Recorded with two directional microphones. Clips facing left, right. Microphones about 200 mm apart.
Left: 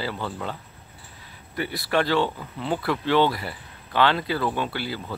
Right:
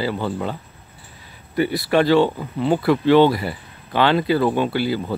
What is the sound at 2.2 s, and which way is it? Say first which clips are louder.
Speech: right 8 dB; 25° right (ahead or behind).